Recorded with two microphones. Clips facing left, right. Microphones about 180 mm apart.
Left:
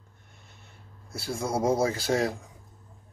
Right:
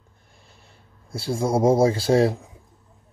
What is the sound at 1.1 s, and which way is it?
Speech, 30° right (ahead or behind).